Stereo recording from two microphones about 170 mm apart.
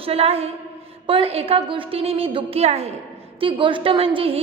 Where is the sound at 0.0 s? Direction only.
35° right (ahead or behind).